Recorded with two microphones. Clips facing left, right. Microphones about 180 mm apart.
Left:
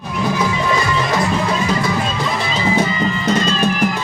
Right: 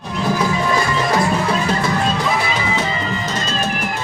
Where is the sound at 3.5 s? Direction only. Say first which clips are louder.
Left 5 dB; 50° right (ahead or behind).